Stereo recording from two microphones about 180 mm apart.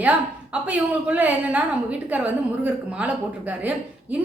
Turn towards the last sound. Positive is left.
turn(degrees=-10)  # may be behind; listen again after turning